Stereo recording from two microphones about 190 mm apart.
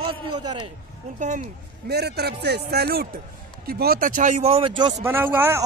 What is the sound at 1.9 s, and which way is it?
Speech, 60° right (ahead or behind).